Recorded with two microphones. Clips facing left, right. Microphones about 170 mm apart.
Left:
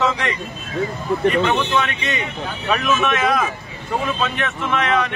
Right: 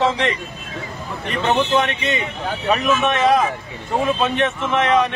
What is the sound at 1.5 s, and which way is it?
Speech, 35° right (ahead or behind).